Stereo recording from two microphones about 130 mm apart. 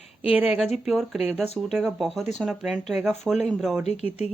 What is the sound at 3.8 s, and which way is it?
Speech, 55° left (ahead or behind).